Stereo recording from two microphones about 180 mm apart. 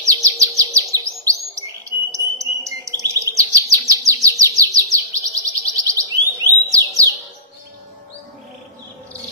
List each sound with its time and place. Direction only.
0.0 s chirp: 15° right (ahead or behind)
1.9 s cricket: 15° right (ahead or behind)
3.0 s chirp: 15° right (ahead or behind)